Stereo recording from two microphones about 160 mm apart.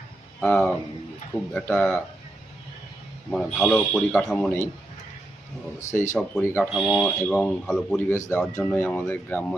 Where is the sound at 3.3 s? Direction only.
5° left (ahead or behind).